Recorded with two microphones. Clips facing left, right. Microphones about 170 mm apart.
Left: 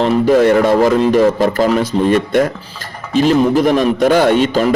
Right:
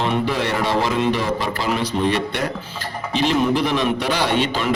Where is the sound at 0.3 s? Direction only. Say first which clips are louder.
Left 11 dB; 45° left (ahead or behind).